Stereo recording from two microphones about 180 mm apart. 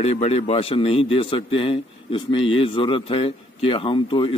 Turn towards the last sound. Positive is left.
turn(degrees=30)  # may be behind; listen again after turning